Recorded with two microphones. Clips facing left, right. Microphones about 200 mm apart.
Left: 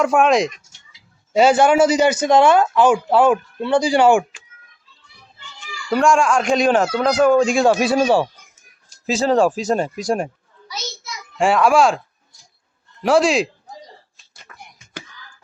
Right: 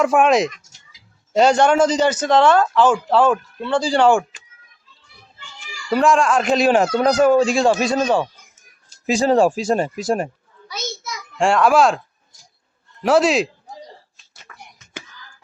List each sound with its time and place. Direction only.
0.0 s fowl: centre (ahead or behind)
1.3 s speech: 5° left (ahead or behind)
5.9 s fowl: centre (ahead or behind)
9.0 s speech: 15° right (ahead or behind)
10.7 s a sound: 55° right (ahead or behind)
11.3 s fowl: 5° left (ahead or behind)
13.0 s fowl: centre (ahead or behind)